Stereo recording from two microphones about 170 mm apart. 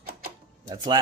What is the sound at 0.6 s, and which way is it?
Speech, 25° right (ahead or behind).